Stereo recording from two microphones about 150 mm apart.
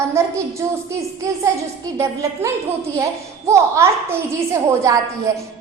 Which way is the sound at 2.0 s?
20° right (ahead or behind).